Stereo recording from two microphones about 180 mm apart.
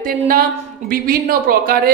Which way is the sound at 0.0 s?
50° right (ahead or behind).